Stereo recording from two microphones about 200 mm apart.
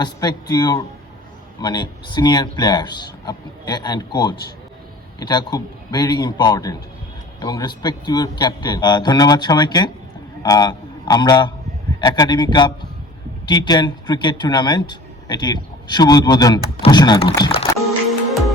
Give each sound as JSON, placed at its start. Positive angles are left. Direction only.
{"t": 0.0, "sound": "a man's voice", "side_deg": 20}